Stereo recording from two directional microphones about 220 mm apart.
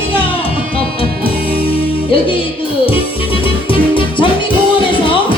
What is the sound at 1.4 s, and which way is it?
Music, 45° right (ahead or behind).